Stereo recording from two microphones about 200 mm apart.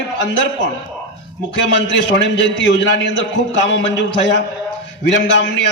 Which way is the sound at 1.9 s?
65° left (ahead or behind).